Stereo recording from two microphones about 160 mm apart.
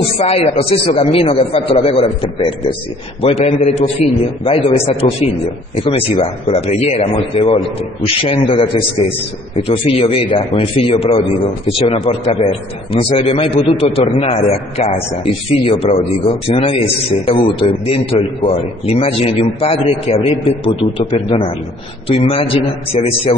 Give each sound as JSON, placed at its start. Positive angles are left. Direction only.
{"t": 0.2, "sound": "a man's voice", "side_deg": 40}
{"t": 15.6, "sound": "a man's voice", "side_deg": 35}